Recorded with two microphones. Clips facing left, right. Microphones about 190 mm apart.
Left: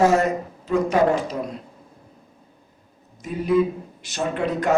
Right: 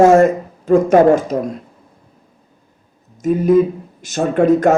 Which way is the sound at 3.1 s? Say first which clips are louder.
Right 8 dB; 45° right (ahead or behind).